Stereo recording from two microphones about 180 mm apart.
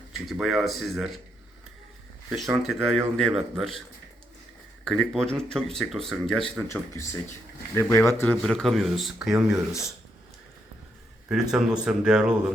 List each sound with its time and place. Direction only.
0.3 s speech: centre (ahead or behind)
2.3 s speech: centre (ahead or behind)
4.9 s speech: 5° left (ahead or behind)
6.7 s speech: 15° left (ahead or behind); by 9.6 s centre (ahead or behind)
11.3 s speech: 5° right (ahead or behind)